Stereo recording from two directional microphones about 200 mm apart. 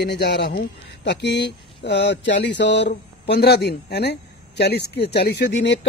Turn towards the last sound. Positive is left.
turn(degrees=60)  # may be behind; listen again after turning